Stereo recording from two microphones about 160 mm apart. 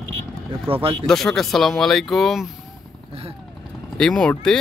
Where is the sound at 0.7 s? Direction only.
35° right (ahead or behind).